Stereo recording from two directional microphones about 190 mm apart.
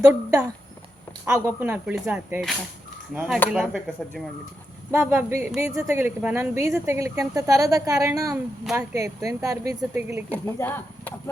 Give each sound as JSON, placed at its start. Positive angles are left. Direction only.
{"t": 0.0, "sound": "a woman's voice", "side_deg": -10}
{"t": 4.9, "sound": "a woman's voice", "side_deg": -15}
{"t": 10.3, "sound": "speech", "side_deg": 10}